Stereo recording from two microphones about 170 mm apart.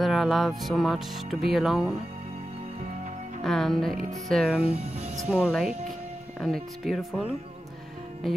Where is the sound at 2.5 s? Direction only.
45° right (ahead or behind).